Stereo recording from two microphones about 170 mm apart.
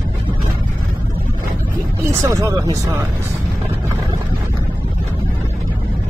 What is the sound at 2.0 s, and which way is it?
Speech, 15° right (ahead or behind).